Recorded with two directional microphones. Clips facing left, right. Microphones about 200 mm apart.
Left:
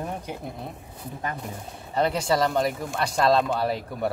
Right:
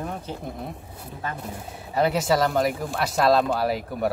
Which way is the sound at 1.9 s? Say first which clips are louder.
Right 2 dB; 5° right (ahead or behind).